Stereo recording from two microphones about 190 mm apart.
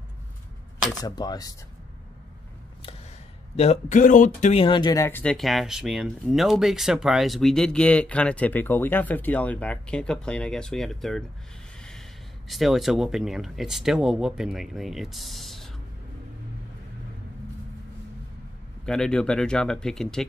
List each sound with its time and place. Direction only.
1.0 s speech: 20° left (ahead or behind)
3.5 s speech: 35° left (ahead or behind); by 11.2 s centre (ahead or behind)
12.4 s speech: centre (ahead or behind)
18.9 s speech: 5° left (ahead or behind)